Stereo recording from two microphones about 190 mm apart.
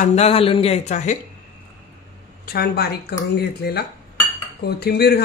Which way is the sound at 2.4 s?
55° left (ahead or behind).